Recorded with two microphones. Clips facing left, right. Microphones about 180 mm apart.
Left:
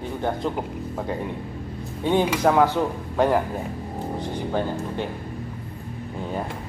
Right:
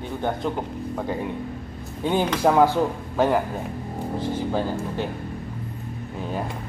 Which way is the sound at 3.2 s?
Centre (ahead or behind).